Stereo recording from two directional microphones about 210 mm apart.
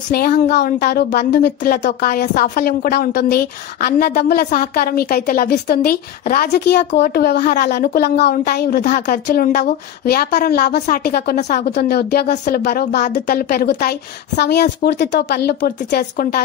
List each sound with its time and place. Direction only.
0.1 s speech: 50° left (ahead or behind)
11.6 s speech: 50° left (ahead or behind)